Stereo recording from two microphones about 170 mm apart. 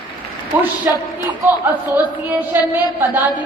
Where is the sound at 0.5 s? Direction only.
10° right (ahead or behind).